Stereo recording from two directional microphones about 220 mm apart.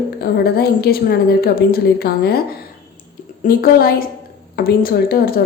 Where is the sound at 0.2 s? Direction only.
45° left (ahead or behind).